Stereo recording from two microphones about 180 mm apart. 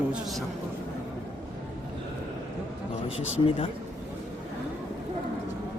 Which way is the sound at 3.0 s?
90° left.